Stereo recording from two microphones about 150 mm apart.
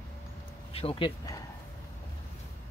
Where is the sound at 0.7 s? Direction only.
35° left (ahead or behind).